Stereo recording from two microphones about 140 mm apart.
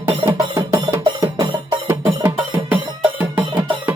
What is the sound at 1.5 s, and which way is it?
Music, 35° right (ahead or behind).